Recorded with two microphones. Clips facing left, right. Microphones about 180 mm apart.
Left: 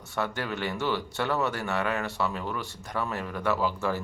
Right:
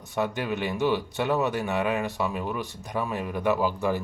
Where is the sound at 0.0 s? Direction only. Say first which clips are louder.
Right 3 dB; 15° right (ahead or behind).